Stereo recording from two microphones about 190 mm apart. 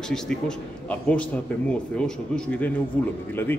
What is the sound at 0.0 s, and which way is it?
A man's voice, 5° left (ahead or behind).